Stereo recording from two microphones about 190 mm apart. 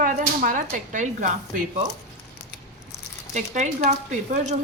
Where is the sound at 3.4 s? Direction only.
40° right (ahead or behind).